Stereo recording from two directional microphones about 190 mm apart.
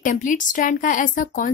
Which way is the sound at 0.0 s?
40° left (ahead or behind).